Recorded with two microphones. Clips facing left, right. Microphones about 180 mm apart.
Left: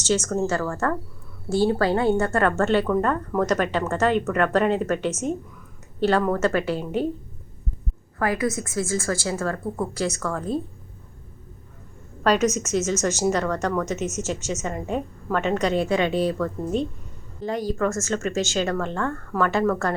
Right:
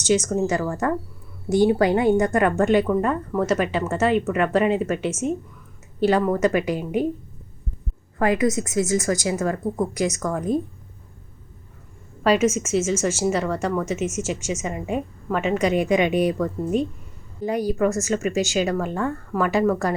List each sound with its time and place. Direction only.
0.0 s a woman's voice: 10° right (ahead or behind)
8.2 s a woman's voice: 20° right (ahead or behind)
12.2 s a woman's voice: 10° right (ahead or behind)